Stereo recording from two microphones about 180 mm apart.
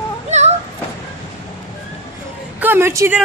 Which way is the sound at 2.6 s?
10° right (ahead or behind).